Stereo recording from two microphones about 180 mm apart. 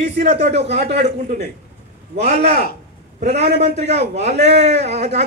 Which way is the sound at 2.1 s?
40° right (ahead or behind).